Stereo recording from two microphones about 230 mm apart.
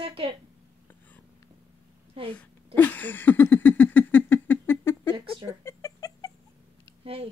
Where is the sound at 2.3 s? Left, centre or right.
Centre.